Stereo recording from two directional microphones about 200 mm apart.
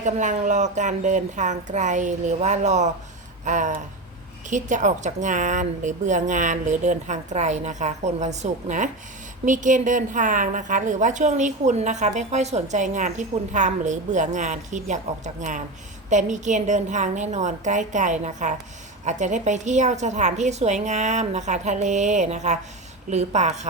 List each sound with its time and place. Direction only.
0.0 s a woman's voice: 40° right (ahead or behind)